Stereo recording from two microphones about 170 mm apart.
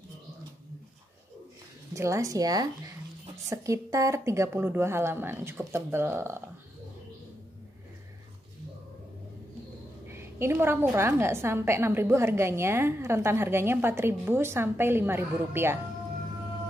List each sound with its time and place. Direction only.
2.0 s a woman's voice: 15° right (ahead or behind)
10.0 s a woman's voice: 15° right (ahead or behind)